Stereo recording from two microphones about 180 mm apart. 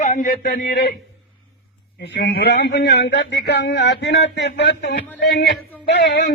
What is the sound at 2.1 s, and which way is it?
A man's voice, 70° left (ahead or behind).